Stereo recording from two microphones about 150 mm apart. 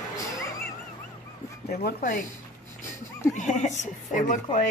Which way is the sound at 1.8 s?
65° left (ahead or behind).